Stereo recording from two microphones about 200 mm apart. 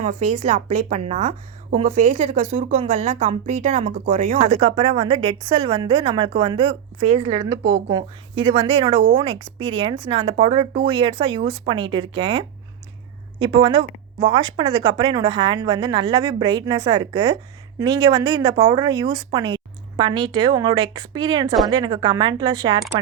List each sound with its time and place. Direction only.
0.0 s a woman's voice: 35° right (ahead or behind)